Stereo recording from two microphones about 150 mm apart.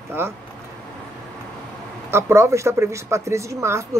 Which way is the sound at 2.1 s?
15° right (ahead or behind).